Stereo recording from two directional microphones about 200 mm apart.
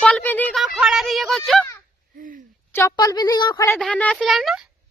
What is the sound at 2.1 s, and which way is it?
Speech, 45° right (ahead or behind).